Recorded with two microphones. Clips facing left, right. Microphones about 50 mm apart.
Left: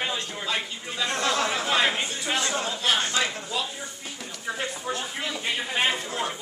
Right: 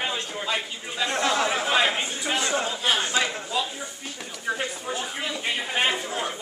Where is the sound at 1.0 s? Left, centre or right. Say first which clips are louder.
Right 2 dB; right.